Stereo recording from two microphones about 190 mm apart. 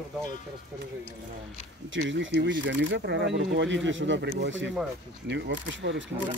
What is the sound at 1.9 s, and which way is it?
Speech, 75° right (ahead or behind).